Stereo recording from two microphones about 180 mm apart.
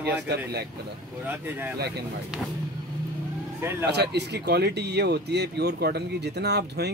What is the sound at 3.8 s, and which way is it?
A man's voice, 65° right (ahead or behind).